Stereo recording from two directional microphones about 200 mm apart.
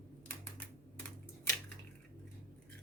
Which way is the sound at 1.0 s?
5° left (ahead or behind).